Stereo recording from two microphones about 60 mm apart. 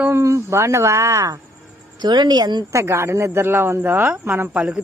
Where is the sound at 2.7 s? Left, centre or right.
Right.